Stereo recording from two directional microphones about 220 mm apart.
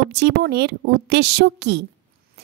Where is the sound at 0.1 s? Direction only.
50° right (ahead or behind).